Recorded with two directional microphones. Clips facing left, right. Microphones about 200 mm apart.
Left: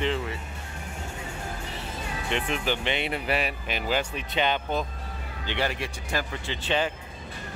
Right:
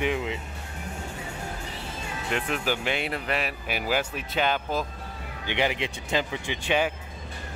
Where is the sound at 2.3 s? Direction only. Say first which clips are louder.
Even; 5° right (ahead or behind).